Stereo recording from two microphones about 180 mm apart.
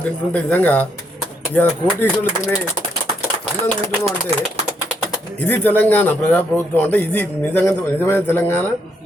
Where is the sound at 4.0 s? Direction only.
35° right (ahead or behind).